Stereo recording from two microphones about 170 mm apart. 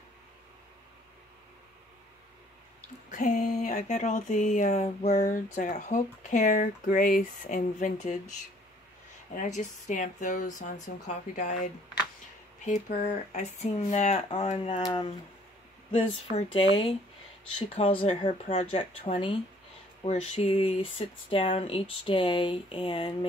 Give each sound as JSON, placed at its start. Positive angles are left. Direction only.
{"t": 3.1, "sound": "speech", "side_deg": 45}
{"t": 14.8, "sound": "speech", "side_deg": 25}